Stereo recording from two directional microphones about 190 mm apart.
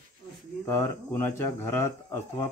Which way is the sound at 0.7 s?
15° left (ahead or behind).